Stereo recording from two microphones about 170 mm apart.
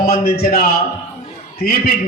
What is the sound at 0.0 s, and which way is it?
A man's voice, 65° left (ahead or behind).